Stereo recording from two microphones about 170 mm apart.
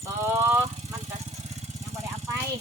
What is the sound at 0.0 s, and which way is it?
Vehicle, 15° right (ahead or behind).